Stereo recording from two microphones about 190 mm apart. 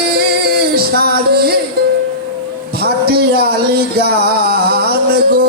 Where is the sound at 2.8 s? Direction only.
55° right (ahead or behind).